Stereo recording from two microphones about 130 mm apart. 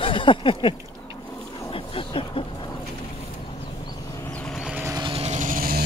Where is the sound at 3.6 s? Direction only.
35° left (ahead or behind).